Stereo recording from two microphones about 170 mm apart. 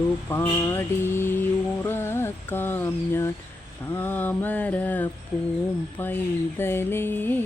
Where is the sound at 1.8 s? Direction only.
15° left (ahead or behind).